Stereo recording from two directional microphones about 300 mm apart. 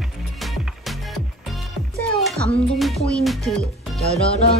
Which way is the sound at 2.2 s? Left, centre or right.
Centre.